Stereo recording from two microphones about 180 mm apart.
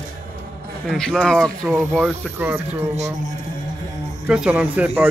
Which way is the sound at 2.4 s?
15° right (ahead or behind).